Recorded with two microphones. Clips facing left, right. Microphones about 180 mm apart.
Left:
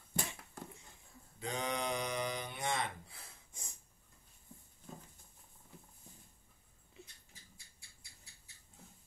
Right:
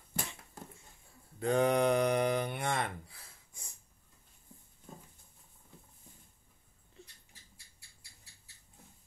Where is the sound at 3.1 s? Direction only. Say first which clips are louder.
Left 1 dB; 20° left (ahead or behind).